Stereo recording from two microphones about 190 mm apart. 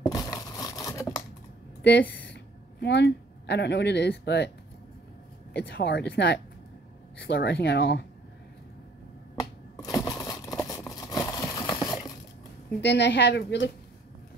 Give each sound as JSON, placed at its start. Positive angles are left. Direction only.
{"t": 0.0, "sound": "crumpling", "side_deg": 20}
{"t": 2.3, "sound": "speech", "side_deg": 65}
{"t": 5.5, "sound": "speech", "side_deg": 55}
{"t": 9.4, "sound": "a sound", "side_deg": 20}
{"t": 12.8, "sound": "speech", "side_deg": 65}